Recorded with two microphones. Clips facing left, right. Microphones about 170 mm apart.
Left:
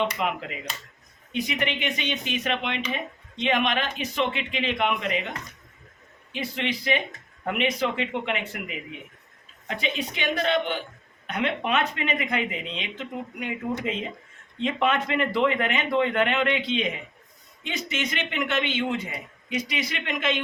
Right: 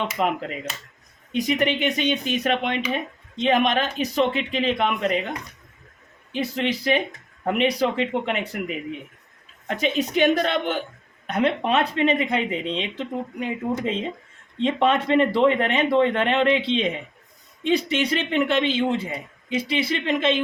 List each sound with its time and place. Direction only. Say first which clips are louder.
0.2 s a man's voice: right 5 dB; 40° right (ahead or behind)
6.3 s a man's voice: right 5 dB; 40° right (ahead or behind)